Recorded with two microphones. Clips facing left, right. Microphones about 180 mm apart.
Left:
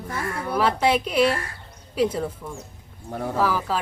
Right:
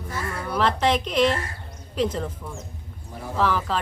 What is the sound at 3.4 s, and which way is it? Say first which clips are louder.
Speech: right 1 dB; 10° left (ahead or behind).